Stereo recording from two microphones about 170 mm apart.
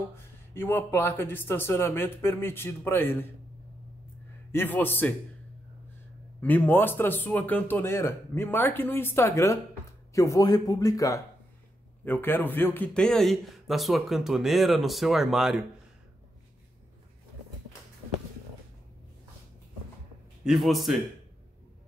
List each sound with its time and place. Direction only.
0.1 s a man's voice: 15° left (ahead or behind)
4.5 s a man's voice: 10° left (ahead or behind)
6.4 s a man's voice: 10° left (ahead or behind)
20.4 s speech: centre (ahead or behind)